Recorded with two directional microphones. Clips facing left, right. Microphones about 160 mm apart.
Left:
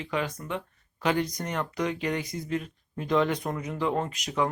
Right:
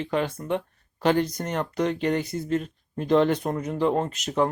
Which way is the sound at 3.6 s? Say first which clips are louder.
Right 4 dB; 40° right (ahead or behind).